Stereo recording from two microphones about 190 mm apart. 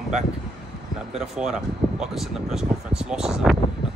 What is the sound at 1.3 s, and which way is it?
Speech, 5° right (ahead or behind).